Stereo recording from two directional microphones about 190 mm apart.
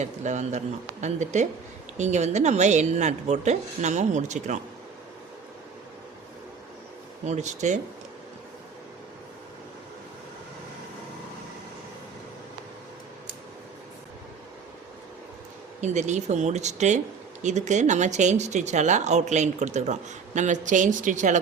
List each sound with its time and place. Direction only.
0.0 s speech: 40° right (ahead or behind)
7.3 s speech: 40° right (ahead or behind)
15.8 s speech: 35° right (ahead or behind)